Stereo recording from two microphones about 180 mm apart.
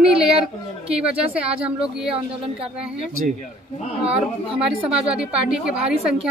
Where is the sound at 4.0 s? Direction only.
5° right (ahead or behind).